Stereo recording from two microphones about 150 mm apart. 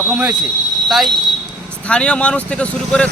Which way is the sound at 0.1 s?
10° right (ahead or behind).